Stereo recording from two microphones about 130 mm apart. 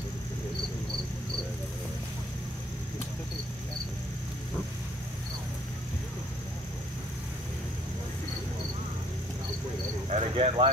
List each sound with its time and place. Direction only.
10.0 s cricket: 55° right (ahead or behind)